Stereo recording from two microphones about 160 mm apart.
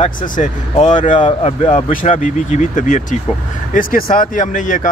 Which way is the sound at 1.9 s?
55° left (ahead or behind).